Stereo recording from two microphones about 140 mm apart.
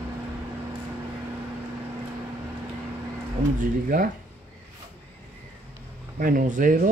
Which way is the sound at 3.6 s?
75° right (ahead or behind).